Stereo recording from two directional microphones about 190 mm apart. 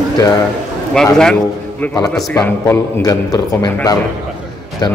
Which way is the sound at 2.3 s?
15° left (ahead or behind).